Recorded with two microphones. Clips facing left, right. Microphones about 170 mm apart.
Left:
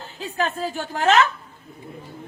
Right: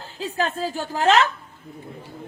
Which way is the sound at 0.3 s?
35° right (ahead or behind).